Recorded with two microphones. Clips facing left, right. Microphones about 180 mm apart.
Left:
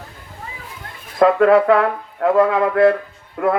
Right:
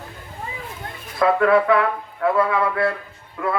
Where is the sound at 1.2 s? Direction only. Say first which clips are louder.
Left 4 dB; 45° left (ahead or behind).